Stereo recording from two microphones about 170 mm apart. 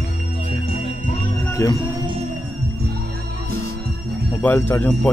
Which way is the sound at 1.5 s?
20° left (ahead or behind).